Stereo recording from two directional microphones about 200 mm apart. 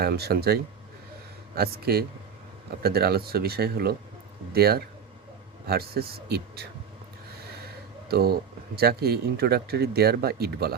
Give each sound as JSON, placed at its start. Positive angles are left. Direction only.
{"t": 0.0, "sound": "speech", "side_deg": -50}
{"t": 8.0, "sound": "speech", "side_deg": -50}